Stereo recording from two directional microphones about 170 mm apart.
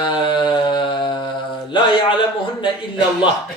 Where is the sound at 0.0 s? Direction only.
30° left (ahead or behind).